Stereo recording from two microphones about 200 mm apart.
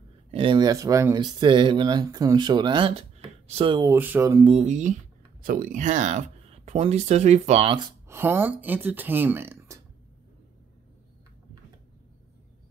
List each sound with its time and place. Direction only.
0.3 s speech: 25° right (ahead or behind)
4.6 s speech: 35° right (ahead or behind)
7.7 s speech: 20° right (ahead or behind)
8.2 s speech: 10° right (ahead or behind)